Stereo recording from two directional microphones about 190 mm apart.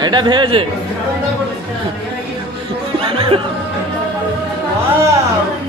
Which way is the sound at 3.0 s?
30° right (ahead or behind).